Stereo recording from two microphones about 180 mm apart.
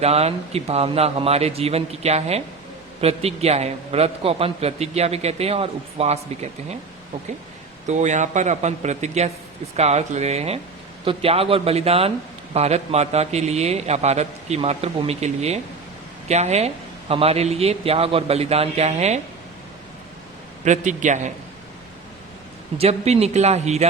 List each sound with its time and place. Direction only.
0.0 s a man's voice: 35° right (ahead or behind)
7.9 s a man's voice: 40° right (ahead or behind)
20.7 s a man's voice: 45° right (ahead or behind)
22.8 s a man's voice: 35° right (ahead or behind)